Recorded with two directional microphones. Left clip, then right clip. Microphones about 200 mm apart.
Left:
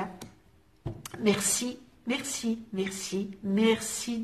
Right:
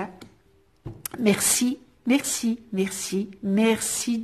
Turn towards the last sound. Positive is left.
turn(degrees=-45)  # may be behind; listen again after turning